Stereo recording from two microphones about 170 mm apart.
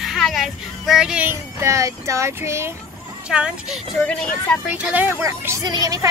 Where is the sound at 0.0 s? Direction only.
Centre (ahead or behind).